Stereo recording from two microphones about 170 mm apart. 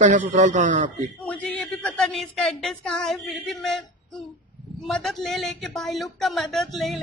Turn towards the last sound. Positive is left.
turn(degrees=0)  # may be behind; listen again after turning